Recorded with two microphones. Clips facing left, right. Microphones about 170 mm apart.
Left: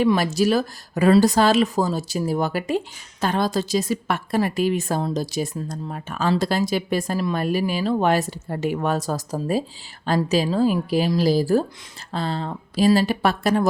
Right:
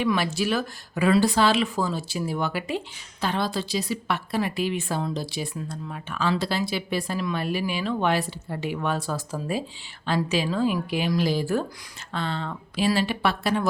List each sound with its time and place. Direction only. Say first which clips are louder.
0.0 s speech: left 6 dB; 40° left (ahead or behind)